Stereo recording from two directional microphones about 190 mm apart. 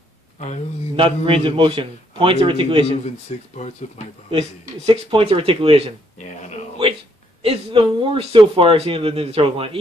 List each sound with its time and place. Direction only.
0.9 s speech: 30° right (ahead or behind)
3.3 s speech: 35° left (ahead or behind)
4.3 s speech: 30° right (ahead or behind)
6.1 s speech: 40° left (ahead or behind)
7.4 s speech: 30° right (ahead or behind)